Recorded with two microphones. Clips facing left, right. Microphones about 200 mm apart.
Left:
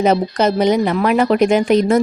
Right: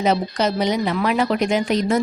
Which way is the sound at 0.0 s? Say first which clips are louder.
Left 5 dB; 50° left (ahead or behind).